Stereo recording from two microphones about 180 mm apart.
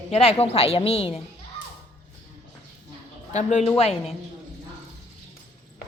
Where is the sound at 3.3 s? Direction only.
40° left (ahead or behind).